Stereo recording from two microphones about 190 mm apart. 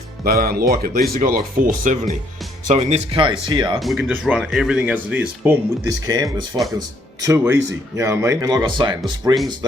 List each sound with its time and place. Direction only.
0.3 s speech: 50° right (ahead or behind); by 3.8 s 25° right (ahead or behind)
3.8 s speech: centre (ahead or behind)
5.8 s speech: 20° right (ahead or behind)